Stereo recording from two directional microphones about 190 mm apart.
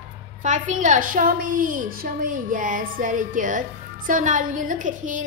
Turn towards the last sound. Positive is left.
turn(degrees=-40)  # may be behind; listen again after turning